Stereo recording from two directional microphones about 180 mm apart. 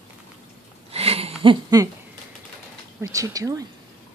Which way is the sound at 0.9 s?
35° right (ahead or behind).